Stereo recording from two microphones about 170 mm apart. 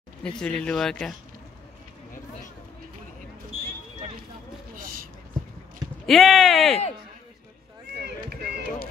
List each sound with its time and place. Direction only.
0.2 s speech: 5° left (ahead or behind)
4.7 s a sound: 55° right (ahead or behind)
6.0 s speech: centre (ahead or behind)
8.0 s run: 70° right (ahead or behind)